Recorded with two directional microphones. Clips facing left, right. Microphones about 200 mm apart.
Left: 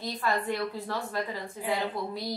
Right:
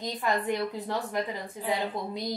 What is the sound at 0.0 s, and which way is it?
A woman's voice, 15° right (ahead or behind).